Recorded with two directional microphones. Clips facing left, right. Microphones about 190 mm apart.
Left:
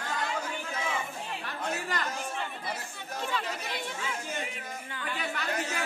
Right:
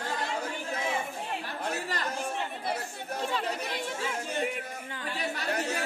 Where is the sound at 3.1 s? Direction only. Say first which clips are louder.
Right 2 dB; 35° right (ahead or behind).